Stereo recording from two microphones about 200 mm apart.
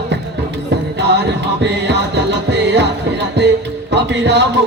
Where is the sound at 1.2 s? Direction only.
60° right (ahead or behind).